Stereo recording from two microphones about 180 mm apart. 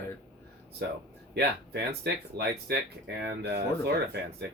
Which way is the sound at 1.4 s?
65° right (ahead or behind).